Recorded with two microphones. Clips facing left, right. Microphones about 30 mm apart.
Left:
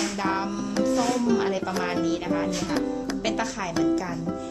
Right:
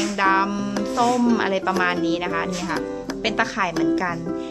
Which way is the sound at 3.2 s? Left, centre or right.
Right.